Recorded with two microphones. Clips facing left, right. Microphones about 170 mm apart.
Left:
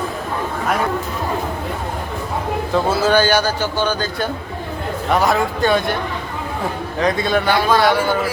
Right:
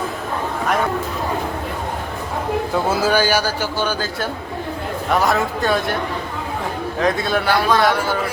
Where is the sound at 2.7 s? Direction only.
10° right (ahead or behind).